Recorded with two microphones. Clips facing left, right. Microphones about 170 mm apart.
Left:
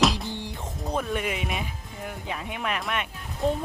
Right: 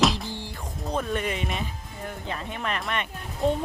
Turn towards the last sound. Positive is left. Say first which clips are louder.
# right 1 dB
turn(degrees=0)  # may be behind; listen again after turning